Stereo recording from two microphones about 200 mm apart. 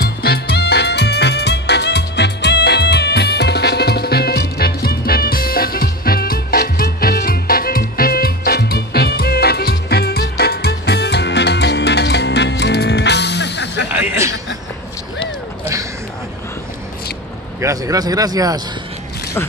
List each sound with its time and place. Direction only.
0.0 s music: 50° left (ahead or behind)
13.8 s a sound: 10° right (ahead or behind)
17.6 s speech: 15° right (ahead or behind)